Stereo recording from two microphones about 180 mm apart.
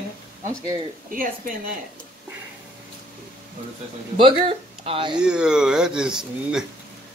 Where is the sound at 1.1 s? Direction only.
50° right (ahead or behind).